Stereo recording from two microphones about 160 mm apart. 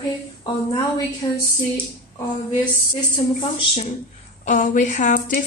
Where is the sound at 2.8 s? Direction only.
30° left (ahead or behind).